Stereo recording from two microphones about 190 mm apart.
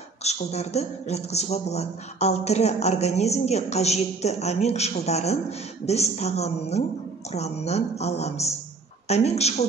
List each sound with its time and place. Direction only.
0.2 s a man's voice: 35° left (ahead or behind)